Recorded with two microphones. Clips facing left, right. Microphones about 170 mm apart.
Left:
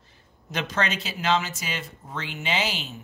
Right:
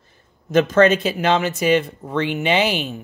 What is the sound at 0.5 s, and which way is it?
Speech, 50° right (ahead or behind).